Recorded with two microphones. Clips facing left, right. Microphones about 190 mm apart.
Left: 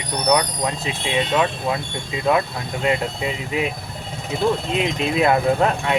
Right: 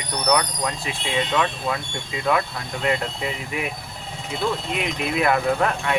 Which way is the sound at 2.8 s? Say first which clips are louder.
Left 2 dB; 20° left (ahead or behind).